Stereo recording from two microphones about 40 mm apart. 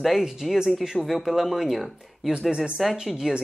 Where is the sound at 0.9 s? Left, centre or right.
Centre.